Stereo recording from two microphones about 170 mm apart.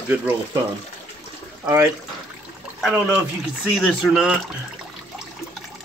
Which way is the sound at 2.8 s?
5° right (ahead or behind).